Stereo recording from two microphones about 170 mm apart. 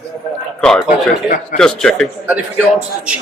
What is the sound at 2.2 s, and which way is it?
Speech, 10° right (ahead or behind).